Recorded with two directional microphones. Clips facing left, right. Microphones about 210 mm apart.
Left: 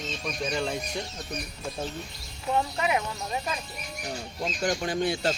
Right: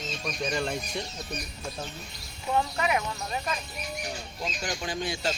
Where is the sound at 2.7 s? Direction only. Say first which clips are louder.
Left 1 dB; 25° left (ahead or behind).